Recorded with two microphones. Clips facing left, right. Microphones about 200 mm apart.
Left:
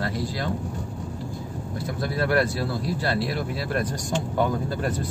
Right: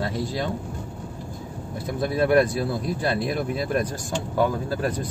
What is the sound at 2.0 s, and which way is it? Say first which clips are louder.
A man's voice: right 4 dB; 20° right (ahead or behind).